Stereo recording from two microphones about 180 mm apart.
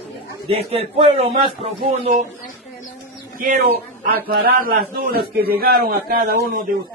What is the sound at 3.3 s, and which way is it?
A man's voice, 55° right (ahead or behind).